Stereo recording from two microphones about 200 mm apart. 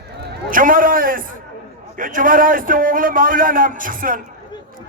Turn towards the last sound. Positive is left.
turn(degrees=-45)  # may be behind; listen again after turning